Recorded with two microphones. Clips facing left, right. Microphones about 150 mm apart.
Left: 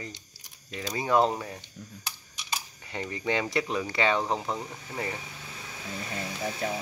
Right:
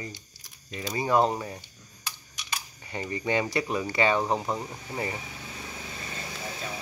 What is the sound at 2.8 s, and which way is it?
Speech, 5° right (ahead or behind).